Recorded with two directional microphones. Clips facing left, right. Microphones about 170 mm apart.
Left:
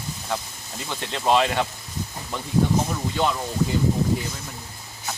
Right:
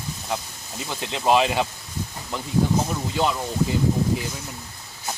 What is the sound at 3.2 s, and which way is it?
Speech, 10° right (ahead or behind).